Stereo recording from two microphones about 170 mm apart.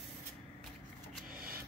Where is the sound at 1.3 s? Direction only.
60° right (ahead or behind).